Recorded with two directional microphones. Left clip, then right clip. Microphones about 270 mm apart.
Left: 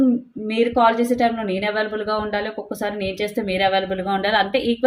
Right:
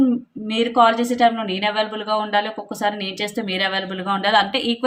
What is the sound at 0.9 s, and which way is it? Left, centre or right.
Speech, centre.